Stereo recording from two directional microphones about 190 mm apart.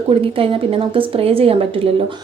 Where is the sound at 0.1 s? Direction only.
30° right (ahead or behind).